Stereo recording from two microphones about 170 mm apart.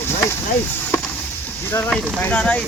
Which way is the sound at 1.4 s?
10° left (ahead or behind).